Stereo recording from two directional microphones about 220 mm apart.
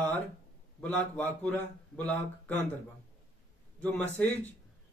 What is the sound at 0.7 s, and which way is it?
Speech, 5° left (ahead or behind).